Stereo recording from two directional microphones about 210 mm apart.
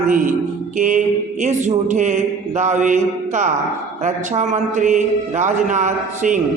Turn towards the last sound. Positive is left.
turn(degrees=-35)  # may be behind; listen again after turning